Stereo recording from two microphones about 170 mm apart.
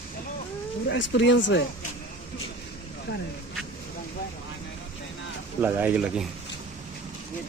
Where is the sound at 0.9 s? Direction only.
90° left.